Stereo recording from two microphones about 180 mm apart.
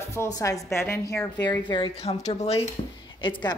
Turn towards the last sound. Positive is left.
turn(degrees=25)  # may be behind; listen again after turning